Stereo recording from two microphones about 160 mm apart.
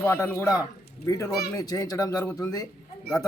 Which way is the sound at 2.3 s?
10° left (ahead or behind).